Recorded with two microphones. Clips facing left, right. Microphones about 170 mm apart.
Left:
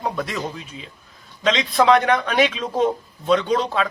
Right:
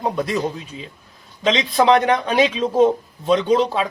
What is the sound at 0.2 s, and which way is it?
A man's voice, 20° right (ahead or behind).